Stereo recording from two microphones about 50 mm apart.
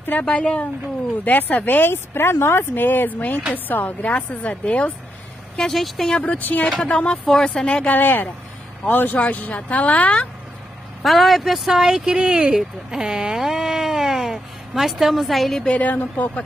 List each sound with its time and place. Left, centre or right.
0.2 s speech: left
1.2 s a woman's voice: left
5.6 s speech: centre
6.2 s a woman's voice: left
6.8 s speech: centre
7.9 s a woman's voice: left
11.0 s speech: centre
15.7 s a woman's voice: left